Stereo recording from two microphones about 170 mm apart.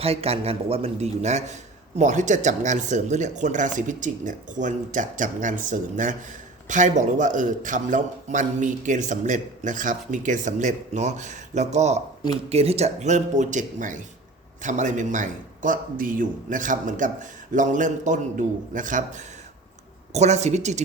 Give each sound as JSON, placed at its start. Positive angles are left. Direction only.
{"t": 0.0, "sound": "a man's voice", "side_deg": -35}